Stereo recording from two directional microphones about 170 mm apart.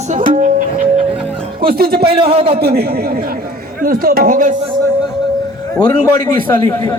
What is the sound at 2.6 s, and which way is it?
Speech, 65° right (ahead or behind).